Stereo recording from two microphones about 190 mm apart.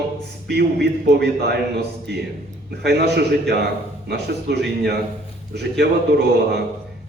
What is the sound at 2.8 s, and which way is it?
A man's voice, 60° right (ahead or behind).